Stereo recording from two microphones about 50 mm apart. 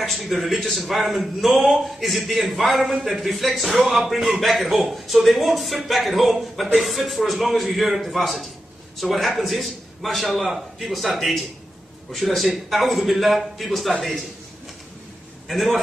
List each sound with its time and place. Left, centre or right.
0.0 s a man's voice: centre
15.4 s a man's voice: centre